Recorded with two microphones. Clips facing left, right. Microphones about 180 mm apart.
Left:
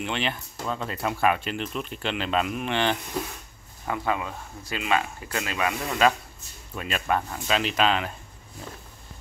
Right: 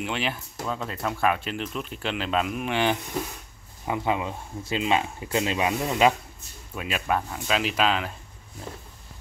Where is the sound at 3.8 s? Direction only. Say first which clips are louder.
Right 2 dB; 20° right (ahead or behind).